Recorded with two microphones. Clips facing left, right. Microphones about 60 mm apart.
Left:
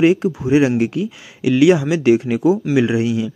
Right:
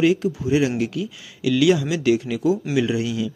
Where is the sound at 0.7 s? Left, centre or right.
Left.